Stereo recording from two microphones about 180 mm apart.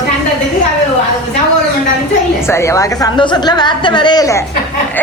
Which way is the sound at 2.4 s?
15° left (ahead or behind).